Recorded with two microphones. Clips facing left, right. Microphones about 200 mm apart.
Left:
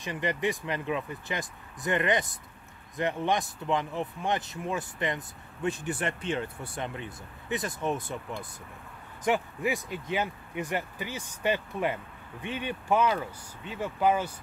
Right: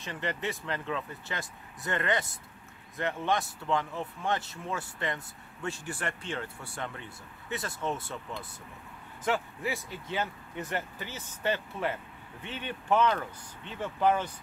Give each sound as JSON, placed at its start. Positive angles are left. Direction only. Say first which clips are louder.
{"t": 0.0, "sound": "speech", "louder": "left 5 dB", "side_deg": 15}